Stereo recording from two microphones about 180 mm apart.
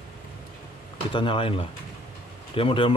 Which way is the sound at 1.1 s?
30° left (ahead or behind).